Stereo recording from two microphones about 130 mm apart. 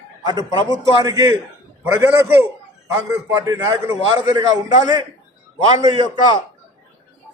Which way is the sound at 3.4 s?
25° right (ahead or behind).